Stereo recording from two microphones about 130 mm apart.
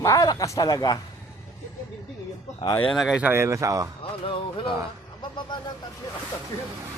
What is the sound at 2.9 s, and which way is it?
Speech, centre (ahead or behind).